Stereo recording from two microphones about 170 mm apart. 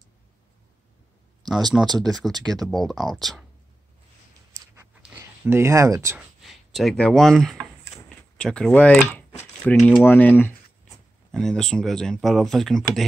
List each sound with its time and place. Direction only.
1.7 s speech: 5° right (ahead or behind)
5.1 s speech: 15° right (ahead or behind)
6.7 s speech: centre (ahead or behind)
10.0 s speech: 10° left (ahead or behind)